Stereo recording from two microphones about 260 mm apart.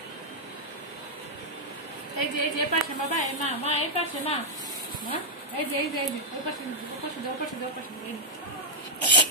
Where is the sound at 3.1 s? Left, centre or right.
Left.